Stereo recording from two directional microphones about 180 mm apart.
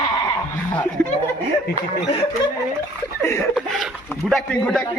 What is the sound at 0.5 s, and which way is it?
Snicker, 10° left (ahead or behind).